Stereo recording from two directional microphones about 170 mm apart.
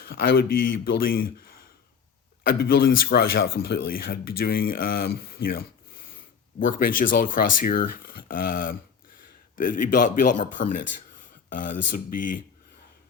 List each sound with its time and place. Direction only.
0.0 s speech: 65° left (ahead or behind)
2.5 s speech: 65° left (ahead or behind)